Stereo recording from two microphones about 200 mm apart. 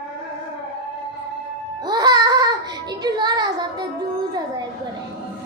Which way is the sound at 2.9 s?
20° right (ahead or behind).